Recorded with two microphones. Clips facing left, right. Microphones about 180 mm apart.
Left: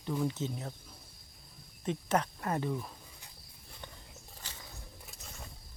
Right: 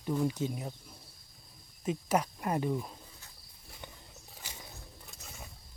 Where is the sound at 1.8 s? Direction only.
10° right (ahead or behind).